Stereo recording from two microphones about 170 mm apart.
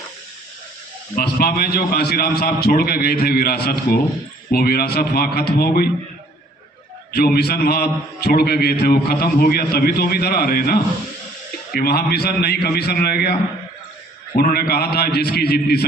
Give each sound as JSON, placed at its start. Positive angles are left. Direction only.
{"t": 1.1, "sound": "a man's voice", "side_deg": 65}
{"t": 7.1, "sound": "a man's voice", "side_deg": 65}
{"t": 14.3, "sound": "a man's voice", "side_deg": 65}